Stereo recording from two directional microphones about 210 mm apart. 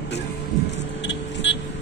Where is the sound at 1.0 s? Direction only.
60° left (ahead or behind).